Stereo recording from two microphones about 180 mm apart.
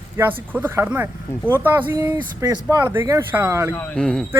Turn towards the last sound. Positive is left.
turn(degrees=5)  # may be behind; listen again after turning